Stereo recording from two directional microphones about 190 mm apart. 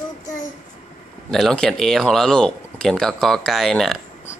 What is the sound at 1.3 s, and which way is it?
Speech, 5° left (ahead or behind).